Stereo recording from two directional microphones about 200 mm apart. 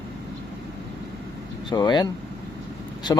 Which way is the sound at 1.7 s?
20° left (ahead or behind).